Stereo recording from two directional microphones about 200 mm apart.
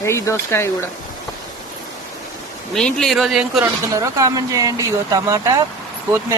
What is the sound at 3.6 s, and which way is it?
Speech, 15° right (ahead or behind).